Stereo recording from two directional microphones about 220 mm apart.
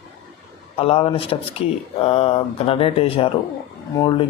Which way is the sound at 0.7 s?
25° left (ahead or behind).